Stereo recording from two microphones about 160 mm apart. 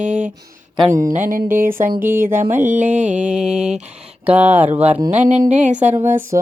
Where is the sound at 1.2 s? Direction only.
60° right (ahead or behind).